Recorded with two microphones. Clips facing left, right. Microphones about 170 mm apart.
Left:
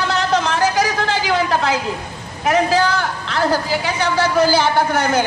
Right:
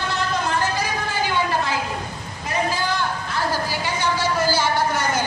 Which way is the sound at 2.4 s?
90° left.